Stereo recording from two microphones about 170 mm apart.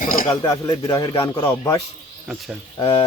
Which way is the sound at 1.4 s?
20° left (ahead or behind).